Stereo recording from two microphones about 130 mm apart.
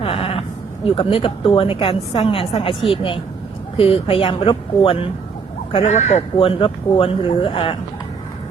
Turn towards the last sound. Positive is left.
turn(degrees=45)  # may be behind; listen again after turning